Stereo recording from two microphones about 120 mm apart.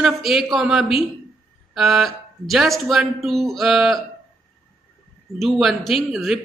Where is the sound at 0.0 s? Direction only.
Centre (ahead or behind).